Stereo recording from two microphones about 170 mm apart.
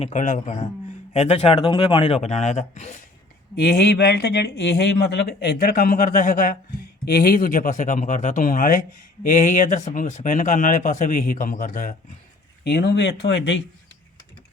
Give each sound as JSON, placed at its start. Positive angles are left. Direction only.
{"t": 0.0, "sound": "speech", "side_deg": 45}
{"t": 3.5, "sound": "speech", "side_deg": 65}
{"t": 12.6, "sound": "speech", "side_deg": 80}